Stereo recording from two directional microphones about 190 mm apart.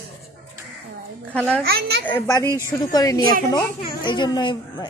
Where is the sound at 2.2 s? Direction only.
15° left (ahead or behind).